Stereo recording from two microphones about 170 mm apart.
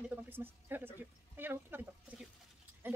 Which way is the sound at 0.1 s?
10° right (ahead or behind).